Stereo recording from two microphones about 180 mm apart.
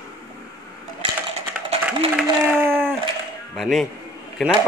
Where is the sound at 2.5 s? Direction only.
10° right (ahead or behind).